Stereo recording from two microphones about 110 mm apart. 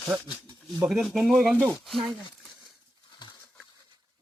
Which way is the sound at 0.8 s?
5° right (ahead or behind).